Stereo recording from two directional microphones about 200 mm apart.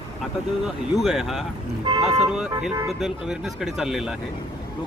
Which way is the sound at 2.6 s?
Centre (ahead or behind).